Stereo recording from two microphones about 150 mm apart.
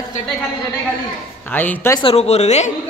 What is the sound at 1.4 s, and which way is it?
Speech, 10° left (ahead or behind).